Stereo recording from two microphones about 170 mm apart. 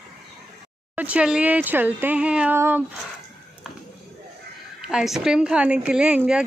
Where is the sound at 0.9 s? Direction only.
10° right (ahead or behind).